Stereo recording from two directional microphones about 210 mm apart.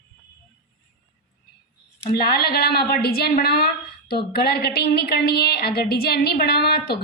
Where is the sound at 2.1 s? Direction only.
45° left (ahead or behind).